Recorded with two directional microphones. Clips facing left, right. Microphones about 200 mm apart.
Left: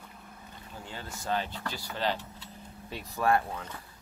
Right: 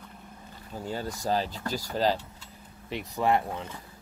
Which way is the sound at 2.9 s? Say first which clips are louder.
Right 2 dB; 20° right (ahead or behind).